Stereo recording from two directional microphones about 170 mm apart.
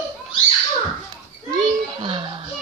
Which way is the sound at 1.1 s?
25° right (ahead or behind).